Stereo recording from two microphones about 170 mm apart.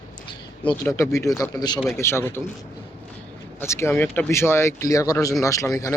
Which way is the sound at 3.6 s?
15° left (ahead or behind).